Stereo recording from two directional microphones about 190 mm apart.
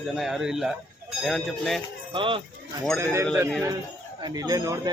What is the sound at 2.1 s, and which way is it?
Speech, 25° right (ahead or behind).